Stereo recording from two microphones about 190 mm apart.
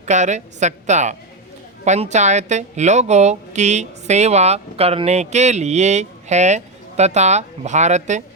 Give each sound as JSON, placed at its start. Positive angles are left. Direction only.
{"t": 0.0, "sound": "a woman's voice", "side_deg": -40}